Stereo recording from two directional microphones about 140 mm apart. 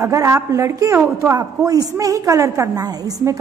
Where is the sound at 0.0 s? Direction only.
20° right (ahead or behind).